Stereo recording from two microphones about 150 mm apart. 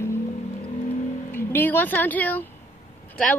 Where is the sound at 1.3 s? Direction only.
15° left (ahead or behind).